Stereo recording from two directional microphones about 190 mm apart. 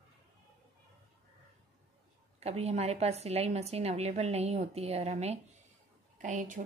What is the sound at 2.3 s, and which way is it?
A woman's voice, 35° right (ahead or behind).